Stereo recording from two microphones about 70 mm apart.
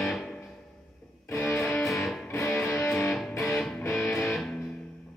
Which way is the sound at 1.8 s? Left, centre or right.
Centre.